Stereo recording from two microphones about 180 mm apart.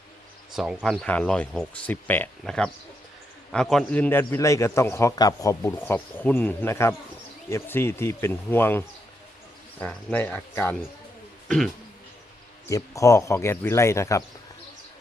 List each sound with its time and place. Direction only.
0.5 s a man's voice: 5° right (ahead or behind); by 8.8 s 10° left (ahead or behind)
9.8 s a man's voice: 10° left (ahead or behind)
12.6 s a man's voice: 15° left (ahead or behind)